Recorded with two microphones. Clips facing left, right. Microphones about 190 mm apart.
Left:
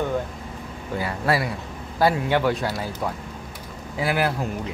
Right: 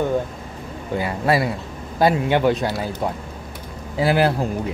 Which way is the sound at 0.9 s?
20° right (ahead or behind).